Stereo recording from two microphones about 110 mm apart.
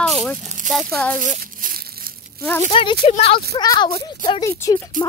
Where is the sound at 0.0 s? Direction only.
15° left (ahead or behind).